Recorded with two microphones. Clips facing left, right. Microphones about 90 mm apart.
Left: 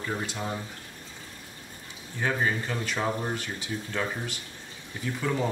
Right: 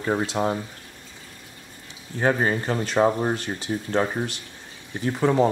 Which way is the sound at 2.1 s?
45° right (ahead or behind).